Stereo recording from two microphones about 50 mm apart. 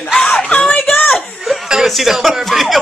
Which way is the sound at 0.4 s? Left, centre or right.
Centre.